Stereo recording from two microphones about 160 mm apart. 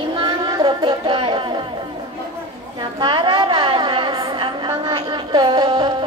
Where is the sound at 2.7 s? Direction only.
30° right (ahead or behind).